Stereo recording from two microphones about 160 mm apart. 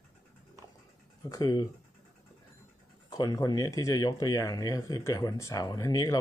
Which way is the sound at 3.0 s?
25° left (ahead or behind).